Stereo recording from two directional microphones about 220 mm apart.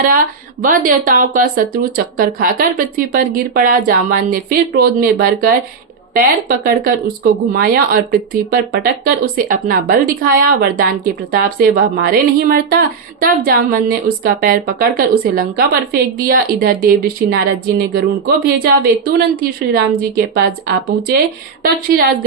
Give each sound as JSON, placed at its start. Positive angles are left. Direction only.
{"t": 0.0, "sound": "speech", "side_deg": -40}